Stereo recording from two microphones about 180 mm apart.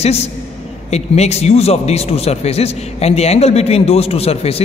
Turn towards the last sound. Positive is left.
turn(degrees=35)  # may be behind; listen again after turning